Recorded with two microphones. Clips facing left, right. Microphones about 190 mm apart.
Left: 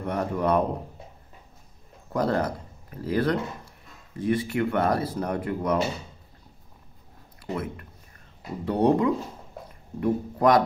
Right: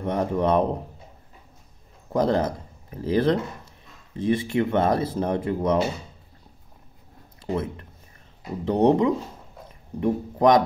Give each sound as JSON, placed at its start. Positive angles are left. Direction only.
{"t": 0.0, "sound": "speech", "side_deg": -20}
{"t": 2.1, "sound": "speech", "side_deg": -20}
{"t": 7.5, "sound": "speech", "side_deg": -25}